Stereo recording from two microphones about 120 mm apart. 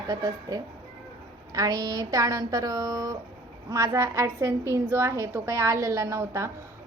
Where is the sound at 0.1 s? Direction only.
30° right (ahead or behind).